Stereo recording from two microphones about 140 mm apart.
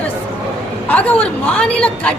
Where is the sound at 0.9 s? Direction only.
10° left (ahead or behind).